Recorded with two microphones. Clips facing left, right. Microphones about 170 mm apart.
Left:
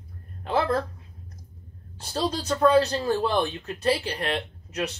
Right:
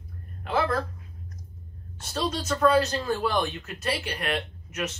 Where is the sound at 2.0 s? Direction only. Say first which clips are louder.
Left 2 dB; 30° left (ahead or behind).